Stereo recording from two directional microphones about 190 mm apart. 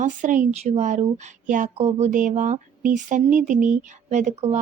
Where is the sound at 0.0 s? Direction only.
40° right (ahead or behind).